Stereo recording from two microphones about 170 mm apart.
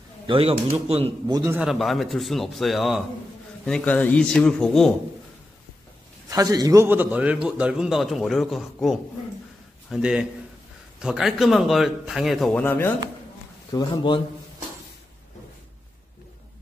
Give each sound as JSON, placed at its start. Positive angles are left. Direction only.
{"t": 0.3, "sound": "speech", "side_deg": -30}
{"t": 1.3, "sound": "a man's voice", "side_deg": -15}
{"t": 1.6, "sound": "a man's voice", "side_deg": 0}
{"t": 6.3, "sound": "a man's voice", "side_deg": -20}
{"t": 12.6, "sound": "speech", "side_deg": 10}
{"t": 13.7, "sound": "speech", "side_deg": 25}